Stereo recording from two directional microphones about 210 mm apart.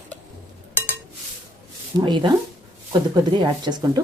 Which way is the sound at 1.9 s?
20° right (ahead or behind).